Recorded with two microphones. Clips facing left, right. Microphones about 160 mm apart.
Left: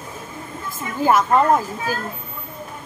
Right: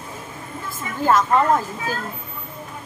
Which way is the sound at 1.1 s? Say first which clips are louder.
Left 1 dB; 15° left (ahead or behind).